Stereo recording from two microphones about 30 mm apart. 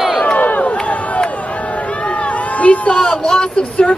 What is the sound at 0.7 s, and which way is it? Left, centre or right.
Crowd, left.